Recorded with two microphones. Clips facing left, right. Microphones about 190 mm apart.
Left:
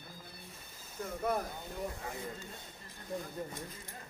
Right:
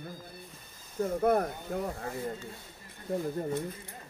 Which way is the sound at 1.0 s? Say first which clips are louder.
Right 9 dB; 55° right (ahead or behind).